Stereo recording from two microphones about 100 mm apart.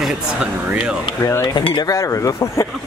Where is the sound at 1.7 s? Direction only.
40° left (ahead or behind).